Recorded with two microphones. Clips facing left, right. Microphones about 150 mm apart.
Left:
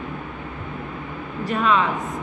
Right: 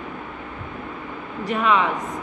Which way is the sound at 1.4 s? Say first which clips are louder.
Even; 15° right (ahead or behind).